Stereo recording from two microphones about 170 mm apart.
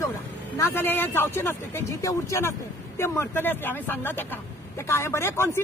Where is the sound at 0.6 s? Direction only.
10° left (ahead or behind).